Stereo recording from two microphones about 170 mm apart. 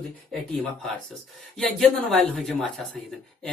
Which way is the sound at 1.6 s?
Centre (ahead or behind).